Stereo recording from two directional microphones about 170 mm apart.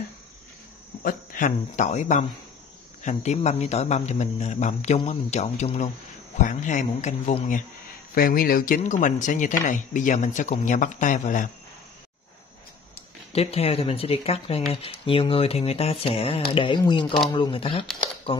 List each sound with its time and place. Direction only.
1.0 s speech: 50° left (ahead or behind)
8.1 s speech: 60° left (ahead or behind)
13.3 s speech: 35° left (ahead or behind)